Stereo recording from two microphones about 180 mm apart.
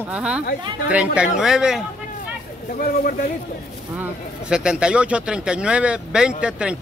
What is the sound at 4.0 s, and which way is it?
Speech, 5° right (ahead or behind).